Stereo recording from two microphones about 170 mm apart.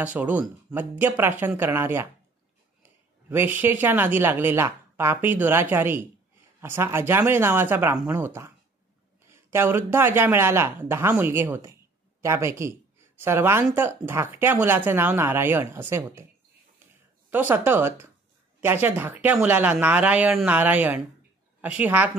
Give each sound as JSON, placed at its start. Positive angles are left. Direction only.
{"t": 0.0, "sound": "speech", "side_deg": -10}
{"t": 17.3, "sound": "speech", "side_deg": -10}